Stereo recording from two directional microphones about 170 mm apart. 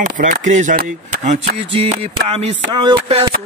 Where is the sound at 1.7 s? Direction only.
35° right (ahead or behind).